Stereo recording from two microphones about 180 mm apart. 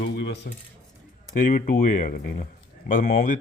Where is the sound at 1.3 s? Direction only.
45° left (ahead or behind).